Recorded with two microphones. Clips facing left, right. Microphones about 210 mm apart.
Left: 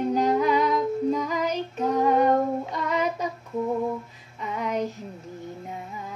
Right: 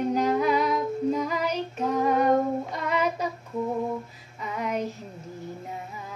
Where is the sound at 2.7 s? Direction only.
35° left (ahead or behind).